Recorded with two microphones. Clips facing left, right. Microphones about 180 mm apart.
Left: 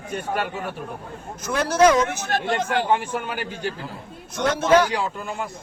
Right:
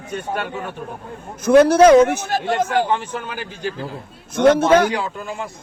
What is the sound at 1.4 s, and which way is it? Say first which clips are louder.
Speech: right 8 dB; 55° right (ahead or behind).